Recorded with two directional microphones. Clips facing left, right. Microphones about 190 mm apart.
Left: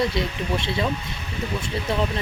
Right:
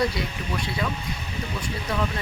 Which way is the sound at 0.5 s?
25° left (ahead or behind).